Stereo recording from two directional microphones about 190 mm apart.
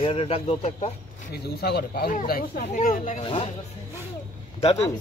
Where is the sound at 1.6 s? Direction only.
55° left (ahead or behind).